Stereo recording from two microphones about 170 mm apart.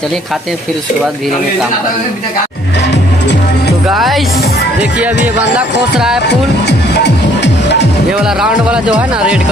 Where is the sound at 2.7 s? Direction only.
90° left.